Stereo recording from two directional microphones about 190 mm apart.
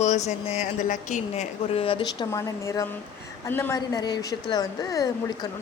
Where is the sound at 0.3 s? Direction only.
35° left (ahead or behind); by 5.5 s 20° left (ahead or behind).